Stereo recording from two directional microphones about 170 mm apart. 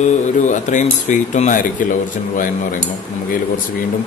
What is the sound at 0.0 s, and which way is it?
Speech, 45° left (ahead or behind).